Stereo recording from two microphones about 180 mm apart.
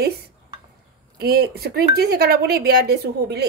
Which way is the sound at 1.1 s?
60° right (ahead or behind).